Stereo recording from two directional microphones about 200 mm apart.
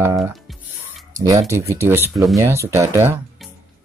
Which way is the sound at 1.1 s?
15° right (ahead or behind).